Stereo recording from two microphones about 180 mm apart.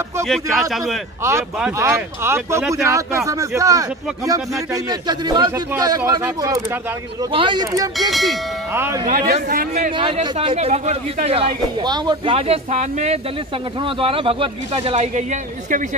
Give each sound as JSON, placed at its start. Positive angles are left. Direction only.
{"t": 0.3, "sound": "a man's voice", "side_deg": 0}
{"t": 1.8, "sound": "speech", "side_deg": -15}
{"t": 4.8, "sound": "a man's voice", "side_deg": -25}
{"t": 8.1, "sound": "a man's voice", "side_deg": 0}
{"t": 8.7, "sound": "speech", "side_deg": -15}
{"t": 9.0, "sound": "a man's voice", "side_deg": -40}
{"t": 9.9, "sound": "a man's voice", "side_deg": -30}
{"t": 12.4, "sound": "a man's voice", "side_deg": -35}